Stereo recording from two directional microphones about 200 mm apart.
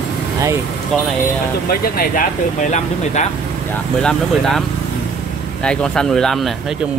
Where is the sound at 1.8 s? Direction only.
50° left (ahead or behind).